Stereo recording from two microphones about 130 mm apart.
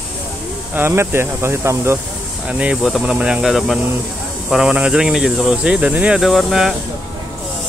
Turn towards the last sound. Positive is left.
turn(degrees=0)  # may be behind; listen again after turning